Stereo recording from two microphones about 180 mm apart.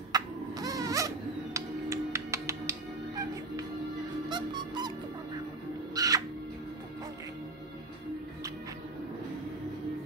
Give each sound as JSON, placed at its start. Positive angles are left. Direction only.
{"t": 0.1, "sound": "music", "side_deg": -20}
{"t": 4.3, "sound": "music", "side_deg": -25}
{"t": 5.9, "sound": "music", "side_deg": -20}